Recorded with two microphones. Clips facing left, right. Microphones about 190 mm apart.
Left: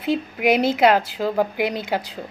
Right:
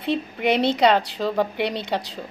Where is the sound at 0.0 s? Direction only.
5° left (ahead or behind).